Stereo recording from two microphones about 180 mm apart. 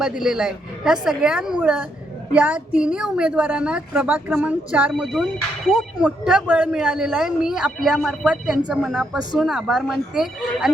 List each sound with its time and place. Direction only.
0.0 s a woman's voice: 5° right (ahead or behind)